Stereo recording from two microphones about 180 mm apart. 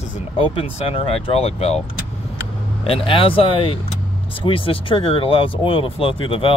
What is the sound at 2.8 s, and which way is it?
Speech, 30° left (ahead or behind).